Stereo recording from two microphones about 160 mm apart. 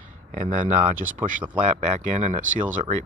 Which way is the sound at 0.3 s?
55° right (ahead or behind).